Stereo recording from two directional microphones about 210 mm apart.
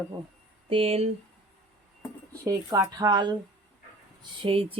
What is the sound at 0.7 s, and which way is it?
Speech, 30° right (ahead or behind).